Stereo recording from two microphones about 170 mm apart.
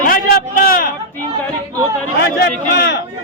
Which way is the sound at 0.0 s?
55° left (ahead or behind).